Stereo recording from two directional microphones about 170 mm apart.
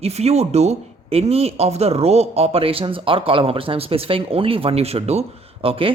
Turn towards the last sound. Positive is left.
turn(degrees=-30)  # may be behind; listen again after turning